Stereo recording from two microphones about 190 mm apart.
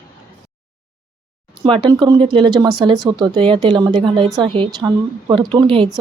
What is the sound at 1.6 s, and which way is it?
A woman's voice, 25° right (ahead or behind).